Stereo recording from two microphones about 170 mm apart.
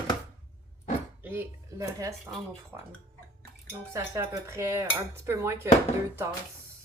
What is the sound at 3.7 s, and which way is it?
A woman's voice, 15° right (ahead or behind).